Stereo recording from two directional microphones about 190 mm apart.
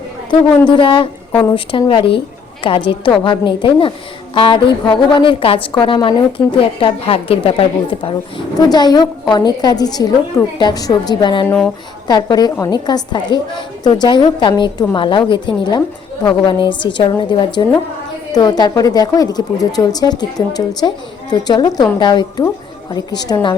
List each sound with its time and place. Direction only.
0.7 s a woman's voice: 25° left (ahead or behind)
1.3 s a woman's voice: 10° left (ahead or behind)
1.5 s a woman's voice: 25° left (ahead or behind)
11.4 s speech: 5° left (ahead or behind)
12.0 s a woman's voice: 20° left (ahead or behind)